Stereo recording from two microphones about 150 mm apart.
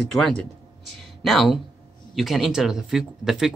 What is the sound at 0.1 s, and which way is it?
Speech, centre (ahead or behind).